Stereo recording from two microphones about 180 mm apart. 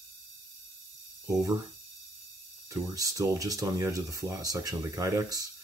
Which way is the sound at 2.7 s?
20° right (ahead or behind).